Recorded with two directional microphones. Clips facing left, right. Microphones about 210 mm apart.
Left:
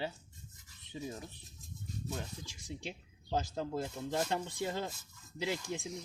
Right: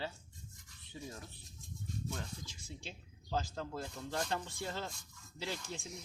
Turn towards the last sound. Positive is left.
turn(degrees=15)  # may be behind; listen again after turning